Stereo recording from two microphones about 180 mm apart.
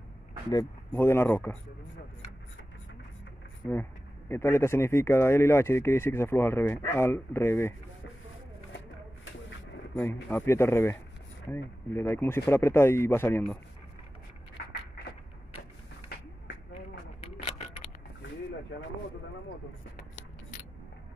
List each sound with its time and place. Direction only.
0.5 s speech: 15° left (ahead or behind)
4.3 s speech: 15° left (ahead or behind)
8.7 s a sound: 90° left
10.3 s speech: 15° left (ahead or behind)
17.2 s keys jangling: 30° left (ahead or behind)